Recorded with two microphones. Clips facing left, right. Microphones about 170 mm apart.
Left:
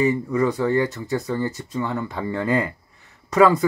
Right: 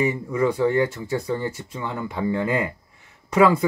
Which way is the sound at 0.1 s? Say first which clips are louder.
Left 1 dB; 15° right (ahead or behind).